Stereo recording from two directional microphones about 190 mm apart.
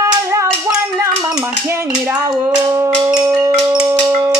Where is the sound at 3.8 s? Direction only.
15° right (ahead or behind).